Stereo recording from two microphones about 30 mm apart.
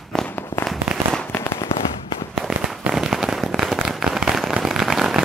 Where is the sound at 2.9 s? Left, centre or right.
Centre.